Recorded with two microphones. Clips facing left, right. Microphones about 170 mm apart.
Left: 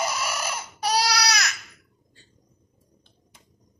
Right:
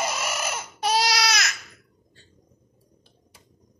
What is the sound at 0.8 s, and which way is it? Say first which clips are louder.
Baby cry: right 1 dB; 20° right (ahead or behind).